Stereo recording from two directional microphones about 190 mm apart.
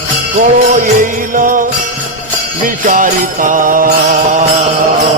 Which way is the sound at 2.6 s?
45° right (ahead or behind).